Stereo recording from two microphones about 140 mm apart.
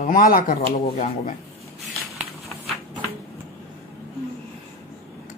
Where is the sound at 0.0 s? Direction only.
75° left (ahead or behind).